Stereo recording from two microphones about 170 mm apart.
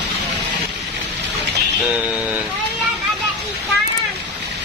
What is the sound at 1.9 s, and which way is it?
Vehicle, 10° right (ahead or behind).